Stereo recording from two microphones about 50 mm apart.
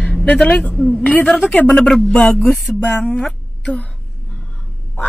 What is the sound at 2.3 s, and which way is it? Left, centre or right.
Speech, centre.